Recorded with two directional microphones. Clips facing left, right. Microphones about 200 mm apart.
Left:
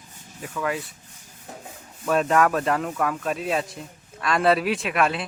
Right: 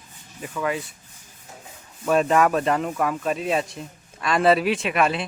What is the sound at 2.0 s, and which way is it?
A man's voice, 5° right (ahead or behind).